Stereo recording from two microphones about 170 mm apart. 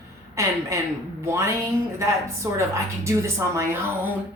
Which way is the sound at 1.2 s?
15° right (ahead or behind).